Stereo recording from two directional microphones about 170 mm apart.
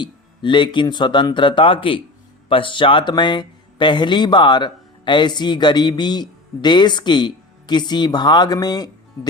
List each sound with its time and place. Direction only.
0.0 s speech: 25° left (ahead or behind)